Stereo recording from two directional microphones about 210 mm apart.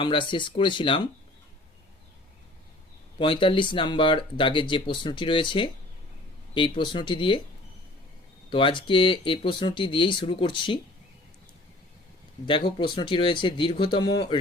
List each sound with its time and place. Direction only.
0.0 s speech: 25° left (ahead or behind)
3.2 s speech: 25° left (ahead or behind)
8.4 s speech: 25° left (ahead or behind)
12.5 s speech: 25° left (ahead or behind)